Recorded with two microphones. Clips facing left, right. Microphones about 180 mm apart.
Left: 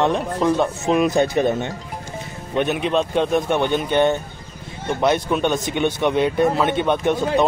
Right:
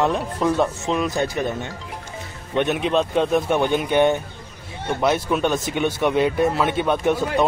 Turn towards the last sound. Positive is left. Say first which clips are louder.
# left 1 dB
turn(degrees=-5)  # may be behind; listen again after turning